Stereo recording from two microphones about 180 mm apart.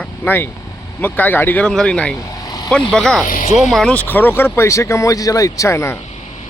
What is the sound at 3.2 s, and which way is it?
Speech, 50° left (ahead or behind).